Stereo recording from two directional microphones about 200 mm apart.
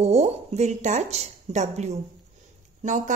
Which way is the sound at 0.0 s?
30° right (ahead or behind).